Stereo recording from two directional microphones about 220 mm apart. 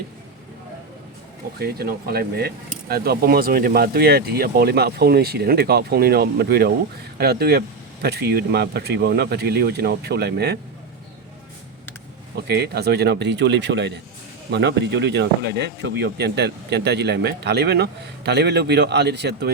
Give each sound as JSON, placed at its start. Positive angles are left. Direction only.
{"t": 1.5, "sound": "speech", "side_deg": -45}
{"t": 12.5, "sound": "speech", "side_deg": -45}